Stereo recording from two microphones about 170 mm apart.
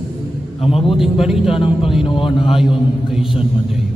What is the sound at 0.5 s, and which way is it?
Speech, 35° left (ahead or behind).